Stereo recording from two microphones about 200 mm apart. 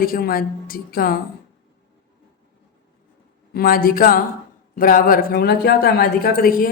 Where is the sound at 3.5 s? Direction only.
45° left (ahead or behind).